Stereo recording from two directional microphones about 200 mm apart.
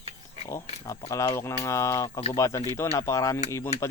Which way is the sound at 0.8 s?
15° left (ahead or behind).